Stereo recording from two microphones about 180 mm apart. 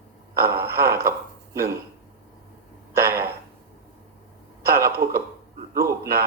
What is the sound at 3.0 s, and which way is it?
Speech, 15° right (ahead or behind).